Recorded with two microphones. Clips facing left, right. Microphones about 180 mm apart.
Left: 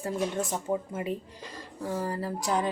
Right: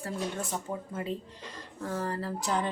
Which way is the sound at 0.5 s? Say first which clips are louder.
Left 5 dB; 15° left (ahead or behind).